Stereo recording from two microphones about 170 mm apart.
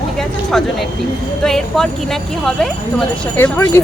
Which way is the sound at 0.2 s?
5° left (ahead or behind).